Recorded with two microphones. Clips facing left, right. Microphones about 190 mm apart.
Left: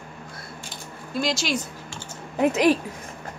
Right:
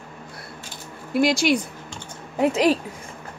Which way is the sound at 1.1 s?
65° right (ahead or behind).